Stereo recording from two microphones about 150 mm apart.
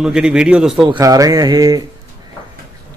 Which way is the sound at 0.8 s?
25° right (ahead or behind).